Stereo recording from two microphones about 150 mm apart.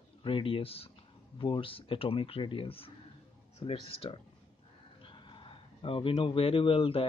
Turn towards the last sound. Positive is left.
turn(degrees=40)  # may be behind; listen again after turning